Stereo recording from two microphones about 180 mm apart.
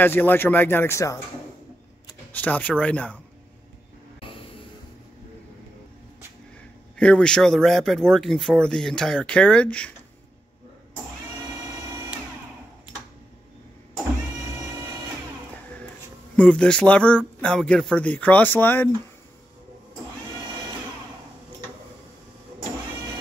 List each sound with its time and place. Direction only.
0.0 s speech: 10° left (ahead or behind)
2.3 s speech: 10° left (ahead or behind)
4.2 s vehicle: 30° left (ahead or behind)
7.0 s speech: 5° left (ahead or behind)
16.3 s speech: 5° left (ahead or behind)